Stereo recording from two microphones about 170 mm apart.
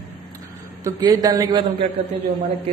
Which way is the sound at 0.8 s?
20° right (ahead or behind).